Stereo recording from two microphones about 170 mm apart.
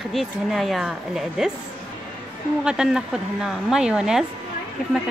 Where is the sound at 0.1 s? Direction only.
Centre (ahead or behind).